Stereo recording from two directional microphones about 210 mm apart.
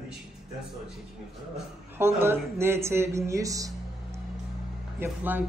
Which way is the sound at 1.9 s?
10° right (ahead or behind).